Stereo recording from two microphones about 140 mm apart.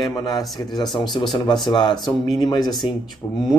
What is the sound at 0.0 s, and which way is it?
A man's voice, 30° left (ahead or behind).